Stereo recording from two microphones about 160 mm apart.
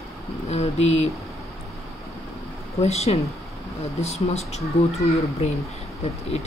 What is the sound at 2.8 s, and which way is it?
Speech, 40° left (ahead or behind).